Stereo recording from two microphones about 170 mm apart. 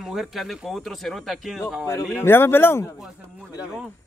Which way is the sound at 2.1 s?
15° left (ahead or behind).